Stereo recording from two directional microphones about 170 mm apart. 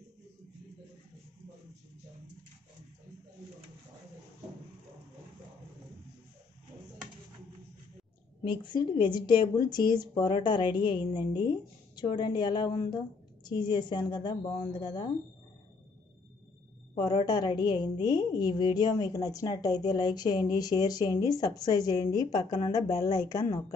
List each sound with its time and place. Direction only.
8.5 s a woman's voice: 25° left (ahead or behind)
16.9 s a woman's voice: 25° left (ahead or behind)